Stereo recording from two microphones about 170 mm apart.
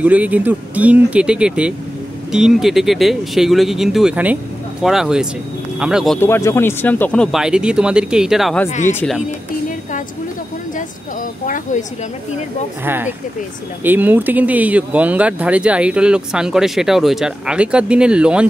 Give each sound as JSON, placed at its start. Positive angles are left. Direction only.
{"t": 0.0, "sound": "speech", "side_deg": -10}
{"t": 6.1, "sound": "speech", "side_deg": 15}
{"t": 8.6, "sound": "speech", "side_deg": 45}
{"t": 8.9, "sound": "speech", "side_deg": 5}
{"t": 10.8, "sound": "speech", "side_deg": 50}
{"t": 12.8, "sound": "speech", "side_deg": -10}